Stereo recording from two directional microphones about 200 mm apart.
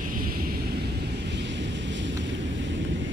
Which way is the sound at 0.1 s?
45° right (ahead or behind).